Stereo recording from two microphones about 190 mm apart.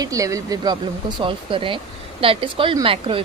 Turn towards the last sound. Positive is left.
turn(degrees=-30)  # may be behind; listen again after turning